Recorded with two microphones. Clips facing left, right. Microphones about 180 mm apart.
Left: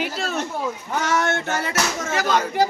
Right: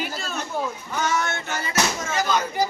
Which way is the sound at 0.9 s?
90° left.